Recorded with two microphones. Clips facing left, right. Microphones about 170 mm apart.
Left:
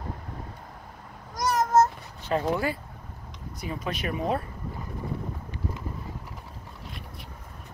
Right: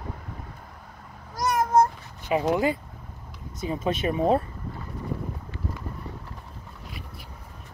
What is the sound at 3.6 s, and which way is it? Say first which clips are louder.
Speech: right 6 dB; 25° right (ahead or behind).